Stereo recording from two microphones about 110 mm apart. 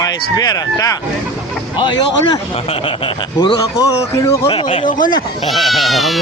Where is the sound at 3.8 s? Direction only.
30° left (ahead or behind).